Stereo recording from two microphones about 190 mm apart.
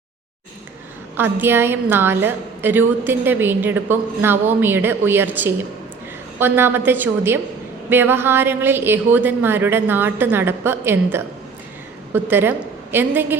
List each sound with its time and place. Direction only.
1.1 s a woman's voice: 10° right (ahead or behind)